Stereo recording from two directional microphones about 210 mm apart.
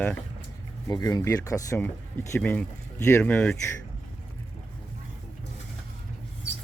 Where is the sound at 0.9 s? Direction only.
20° left (ahead or behind).